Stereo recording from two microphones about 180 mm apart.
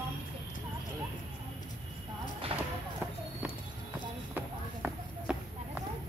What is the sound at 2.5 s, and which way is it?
Basketball bounce, 30° right (ahead or behind).